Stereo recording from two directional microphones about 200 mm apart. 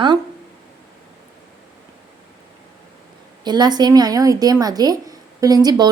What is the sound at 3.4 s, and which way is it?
Speech, 20° right (ahead or behind).